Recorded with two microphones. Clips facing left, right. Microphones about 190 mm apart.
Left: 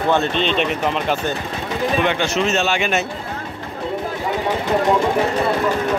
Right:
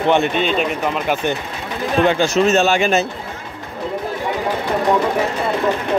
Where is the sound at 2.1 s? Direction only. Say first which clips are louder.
Right 4 dB; 40° right (ahead or behind).